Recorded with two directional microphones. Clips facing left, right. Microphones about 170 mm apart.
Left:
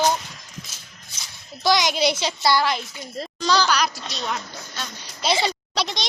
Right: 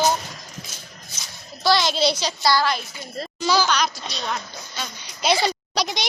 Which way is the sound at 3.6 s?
5° left (ahead or behind).